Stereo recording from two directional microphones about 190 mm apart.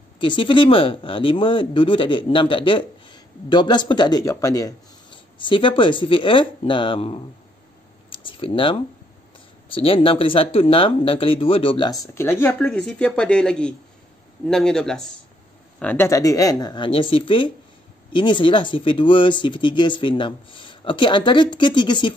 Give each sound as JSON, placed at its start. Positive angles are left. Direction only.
{"t": 0.2, "sound": "speech", "side_deg": 25}